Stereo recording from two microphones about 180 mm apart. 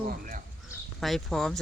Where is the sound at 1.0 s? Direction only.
Centre (ahead or behind).